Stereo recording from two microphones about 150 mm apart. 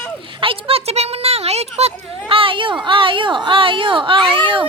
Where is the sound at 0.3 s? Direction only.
35° right (ahead or behind).